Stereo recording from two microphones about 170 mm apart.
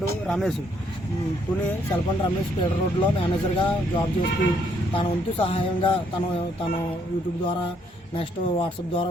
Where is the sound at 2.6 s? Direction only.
30° left (ahead or behind).